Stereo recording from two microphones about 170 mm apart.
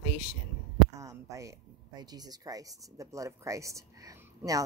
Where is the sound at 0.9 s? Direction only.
20° right (ahead or behind).